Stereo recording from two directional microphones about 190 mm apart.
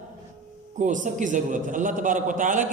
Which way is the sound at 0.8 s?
40° right (ahead or behind).